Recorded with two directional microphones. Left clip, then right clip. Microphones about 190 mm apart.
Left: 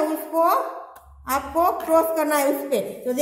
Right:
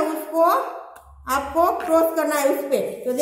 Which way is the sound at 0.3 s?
40° left (ahead or behind).